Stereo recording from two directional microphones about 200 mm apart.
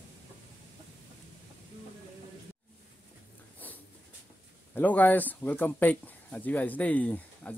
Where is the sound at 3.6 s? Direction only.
10° left (ahead or behind).